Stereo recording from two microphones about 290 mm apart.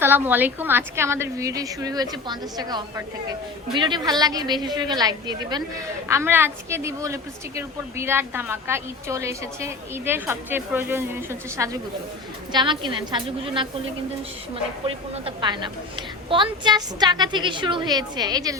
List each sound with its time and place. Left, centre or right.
0.0 s a woman's voice: centre